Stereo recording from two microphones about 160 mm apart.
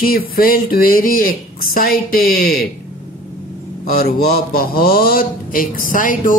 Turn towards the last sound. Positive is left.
turn(degrees=55)  # may be behind; listen again after turning